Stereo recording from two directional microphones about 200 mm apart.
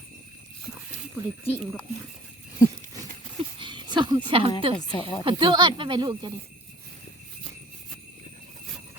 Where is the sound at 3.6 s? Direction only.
25° right (ahead or behind).